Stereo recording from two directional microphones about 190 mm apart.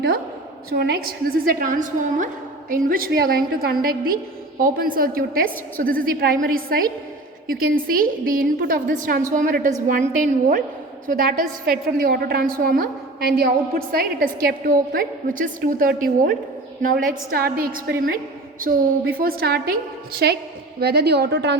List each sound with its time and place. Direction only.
0.7 s a woman's voice: 55° right (ahead or behind)